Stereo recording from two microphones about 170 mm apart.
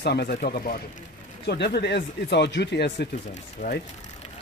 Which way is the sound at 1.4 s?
75° left (ahead or behind).